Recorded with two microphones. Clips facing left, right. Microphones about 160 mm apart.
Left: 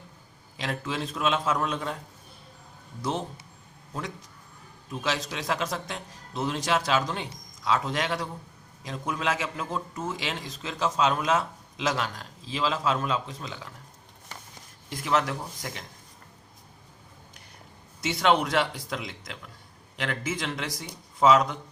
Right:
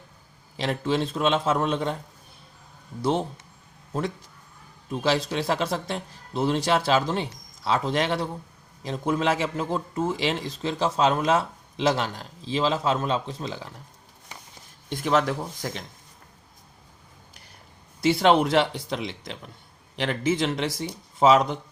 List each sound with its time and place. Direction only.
0.5 s speech: 30° right (ahead or behind)
3.0 s a man's voice: 30° right (ahead or behind)
4.9 s a man's voice: 30° right (ahead or behind)
14.8 s a man's voice: 30° right (ahead or behind)
18.0 s a man's voice: 30° right (ahead or behind)